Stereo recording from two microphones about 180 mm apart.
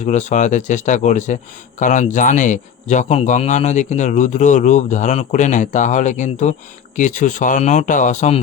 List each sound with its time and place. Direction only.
0.0 s a man's voice: 40° left (ahead or behind)